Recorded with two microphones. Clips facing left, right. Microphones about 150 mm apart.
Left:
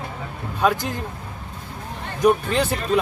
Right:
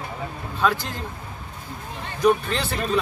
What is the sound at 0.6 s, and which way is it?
Speech, 20° left (ahead or behind).